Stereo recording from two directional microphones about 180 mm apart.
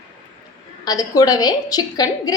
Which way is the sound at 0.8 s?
20° left (ahead or behind).